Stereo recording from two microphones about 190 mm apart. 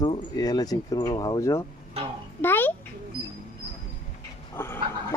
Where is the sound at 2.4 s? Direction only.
10° left (ahead or behind).